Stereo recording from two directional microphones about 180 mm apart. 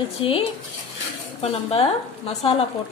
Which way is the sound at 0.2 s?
30° left (ahead or behind).